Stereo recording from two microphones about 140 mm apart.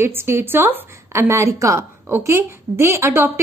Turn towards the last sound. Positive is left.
turn(degrees=-20)  # may be behind; listen again after turning